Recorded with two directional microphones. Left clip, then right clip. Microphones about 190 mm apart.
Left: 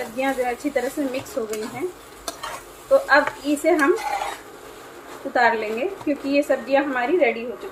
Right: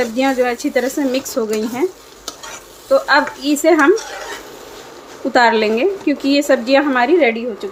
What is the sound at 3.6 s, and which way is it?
Speech, 45° right (ahead or behind).